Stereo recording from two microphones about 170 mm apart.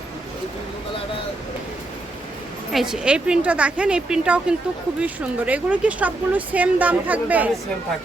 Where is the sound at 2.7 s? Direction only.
Centre (ahead or behind).